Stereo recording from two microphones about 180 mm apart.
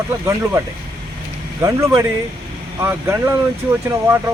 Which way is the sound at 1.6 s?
15° right (ahead or behind).